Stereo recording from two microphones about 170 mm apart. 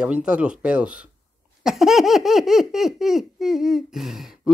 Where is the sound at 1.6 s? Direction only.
Centre (ahead or behind).